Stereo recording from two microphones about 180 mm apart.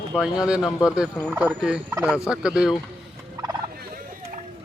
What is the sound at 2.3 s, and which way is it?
Speech, 5° right (ahead or behind).